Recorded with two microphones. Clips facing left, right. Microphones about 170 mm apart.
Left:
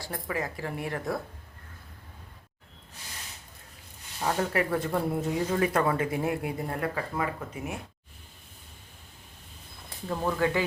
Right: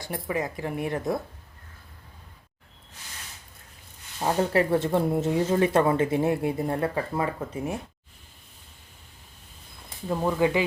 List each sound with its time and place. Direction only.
0.0 s speech: 20° right (ahead or behind)
4.2 s speech: 30° right (ahead or behind)
10.1 s speech: 15° right (ahead or behind)